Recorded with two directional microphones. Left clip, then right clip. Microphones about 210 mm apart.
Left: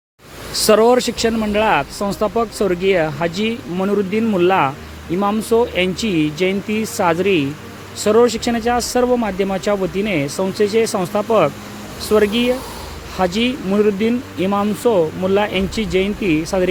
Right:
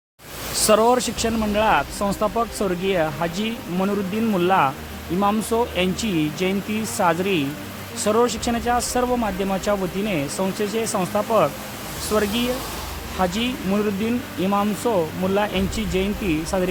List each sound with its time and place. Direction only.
0.6 s speech: 15° left (ahead or behind)